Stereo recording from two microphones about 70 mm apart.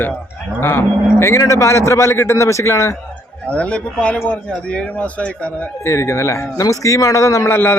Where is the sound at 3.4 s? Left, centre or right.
Centre.